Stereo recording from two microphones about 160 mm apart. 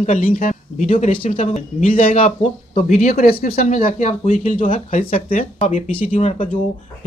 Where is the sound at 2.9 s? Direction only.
60° left (ahead or behind).